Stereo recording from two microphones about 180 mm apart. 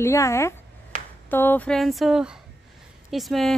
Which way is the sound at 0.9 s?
40° right (ahead or behind).